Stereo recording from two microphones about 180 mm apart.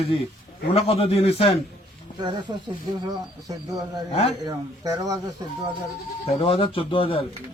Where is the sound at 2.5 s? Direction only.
25° right (ahead or behind).